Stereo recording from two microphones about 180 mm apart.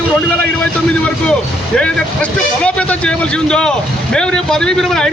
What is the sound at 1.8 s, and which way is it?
A man's voice, 5° left (ahead or behind).